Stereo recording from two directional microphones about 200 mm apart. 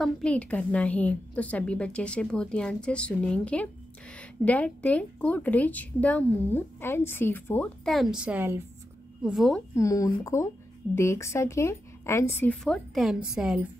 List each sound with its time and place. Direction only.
0.0 s a woman's voice: 5° left (ahead or behind)
9.8 s a woman's voice: 15° left (ahead or behind)
12.6 s a woman's voice: centre (ahead or behind)